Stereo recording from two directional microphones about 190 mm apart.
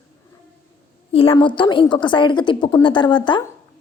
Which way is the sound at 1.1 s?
30° left (ahead or behind).